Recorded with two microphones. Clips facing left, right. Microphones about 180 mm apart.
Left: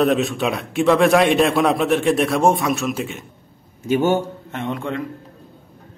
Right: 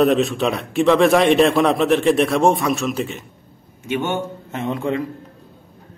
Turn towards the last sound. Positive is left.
turn(degrees=0)  # may be behind; listen again after turning